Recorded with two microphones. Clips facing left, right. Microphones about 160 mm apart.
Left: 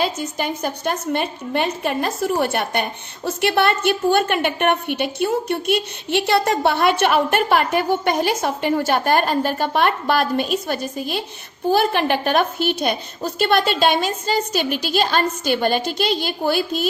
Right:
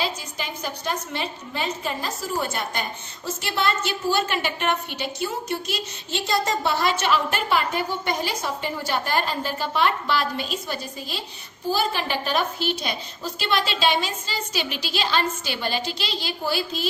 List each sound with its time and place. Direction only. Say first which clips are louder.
0.0 s a woman's voice: left 7 dB; 50° left (ahead or behind)